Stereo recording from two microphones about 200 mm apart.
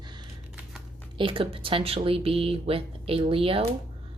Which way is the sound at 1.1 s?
25° right (ahead or behind).